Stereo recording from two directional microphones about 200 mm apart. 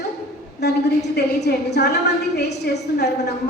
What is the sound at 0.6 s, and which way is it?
A woman's voice, 55° left (ahead or behind).